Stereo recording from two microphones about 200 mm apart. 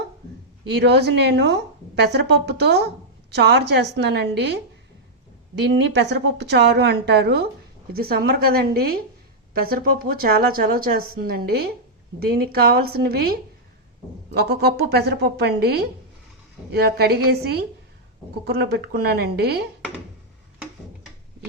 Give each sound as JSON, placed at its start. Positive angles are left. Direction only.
{"t": 0.8, "sound": "a woman's voice", "side_deg": -55}
{"t": 5.5, "sound": "a woman's voice", "side_deg": -55}